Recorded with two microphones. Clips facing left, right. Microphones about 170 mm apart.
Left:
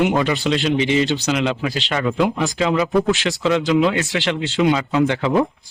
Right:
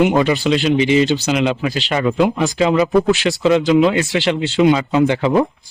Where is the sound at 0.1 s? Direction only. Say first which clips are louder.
Right 4 dB; 15° right (ahead or behind).